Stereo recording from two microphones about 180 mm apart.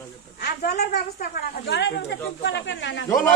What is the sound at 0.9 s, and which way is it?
Speech, 60° left (ahead or behind).